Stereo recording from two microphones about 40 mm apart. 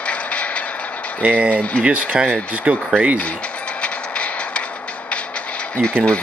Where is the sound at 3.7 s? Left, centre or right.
Left.